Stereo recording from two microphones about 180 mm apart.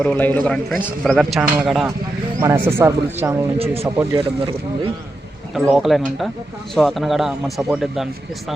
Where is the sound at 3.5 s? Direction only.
35° right (ahead or behind).